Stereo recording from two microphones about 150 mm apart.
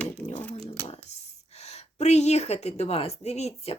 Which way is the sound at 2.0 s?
50° left (ahead or behind).